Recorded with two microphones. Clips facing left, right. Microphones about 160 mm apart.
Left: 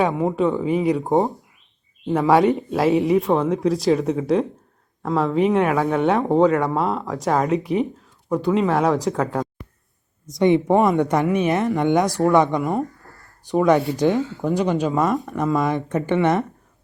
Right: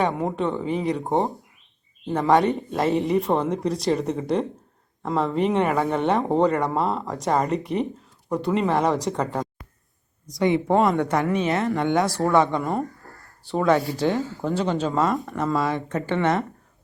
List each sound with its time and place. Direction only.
0.0 s speech: centre (ahead or behind)
10.2 s speech: 20° left (ahead or behind)